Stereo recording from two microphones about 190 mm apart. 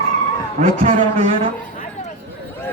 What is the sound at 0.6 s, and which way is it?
Speech, 30° right (ahead or behind).